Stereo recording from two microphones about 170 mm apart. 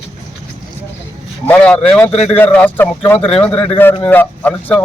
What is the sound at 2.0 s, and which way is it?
Speech, 40° left (ahead or behind).